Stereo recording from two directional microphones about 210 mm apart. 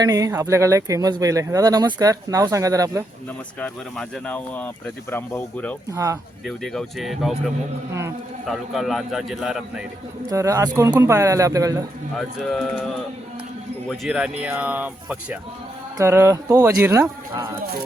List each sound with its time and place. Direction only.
0.0 s speech: 15° right (ahead or behind)
3.6 s speech: 5° left (ahead or behind)
5.9 s speech: 15° right (ahead or behind)
6.4 s a man's voice: centre (ahead or behind)
10.2 s speech: 15° right (ahead or behind)
12.1 s a man's voice: centre (ahead or behind)